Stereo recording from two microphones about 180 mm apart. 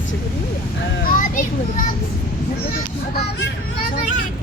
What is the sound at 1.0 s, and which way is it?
A child's voice, 50° left (ahead or behind).